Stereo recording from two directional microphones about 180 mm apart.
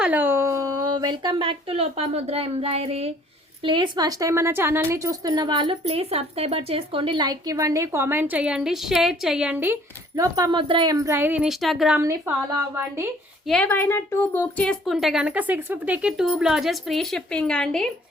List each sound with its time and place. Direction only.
0.0 s speech: 10° right (ahead or behind)
10.2 s speech: 20° right (ahead or behind); by 11.9 s centre (ahead or behind)
11.9 s speech: 15° right (ahead or behind)
13.5 s a woman's voice: 10° left (ahead or behind)